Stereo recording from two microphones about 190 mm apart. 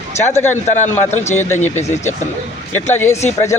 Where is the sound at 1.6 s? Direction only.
35° left (ahead or behind).